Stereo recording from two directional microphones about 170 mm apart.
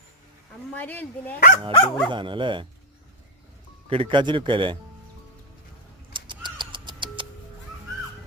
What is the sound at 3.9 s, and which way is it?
Speech, 30° right (ahead or behind).